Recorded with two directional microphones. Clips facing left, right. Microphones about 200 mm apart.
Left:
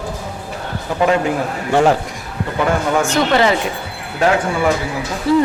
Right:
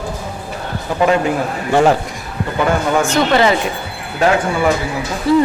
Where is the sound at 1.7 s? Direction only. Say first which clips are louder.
Right 1 dB; 15° right (ahead or behind).